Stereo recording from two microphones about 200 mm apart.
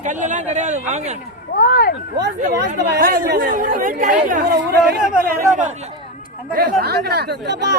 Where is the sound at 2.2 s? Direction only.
60° right (ahead or behind); by 5.7 s 40° right (ahead or behind).